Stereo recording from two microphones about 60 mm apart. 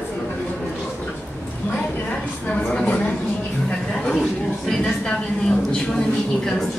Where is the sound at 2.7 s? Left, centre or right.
Centre.